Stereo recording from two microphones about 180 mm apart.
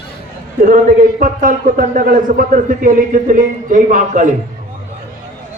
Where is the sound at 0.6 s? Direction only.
50° right (ahead or behind).